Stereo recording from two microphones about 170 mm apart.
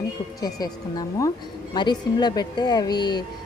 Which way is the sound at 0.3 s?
25° left (ahead or behind).